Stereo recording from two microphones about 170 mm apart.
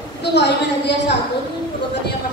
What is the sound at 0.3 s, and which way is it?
Speech, 85° left.